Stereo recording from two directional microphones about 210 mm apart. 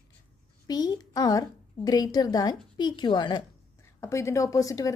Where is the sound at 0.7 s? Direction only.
20° left (ahead or behind).